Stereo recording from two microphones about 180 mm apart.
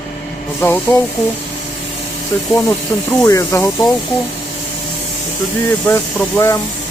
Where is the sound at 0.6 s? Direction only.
10° left (ahead or behind).